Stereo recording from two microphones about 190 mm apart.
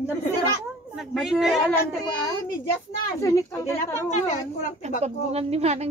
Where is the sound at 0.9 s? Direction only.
Centre (ahead or behind).